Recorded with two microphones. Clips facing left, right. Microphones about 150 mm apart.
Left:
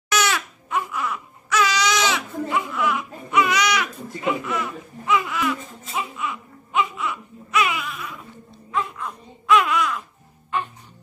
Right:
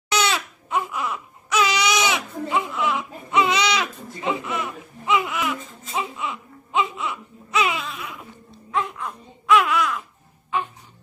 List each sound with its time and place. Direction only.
0.1 s crying: 25° right (ahead or behind)
5.9 s baby cry: 25° right (ahead or behind)
8.7 s a sound: 5° right (ahead or behind)